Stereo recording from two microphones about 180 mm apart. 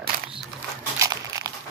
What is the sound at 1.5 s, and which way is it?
Crumpling, 20° right (ahead or behind).